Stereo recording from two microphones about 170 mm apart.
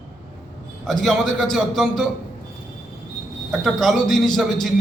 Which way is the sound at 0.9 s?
Centre (ahead or behind).